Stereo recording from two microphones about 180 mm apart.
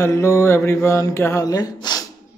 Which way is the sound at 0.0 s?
15° left (ahead or behind).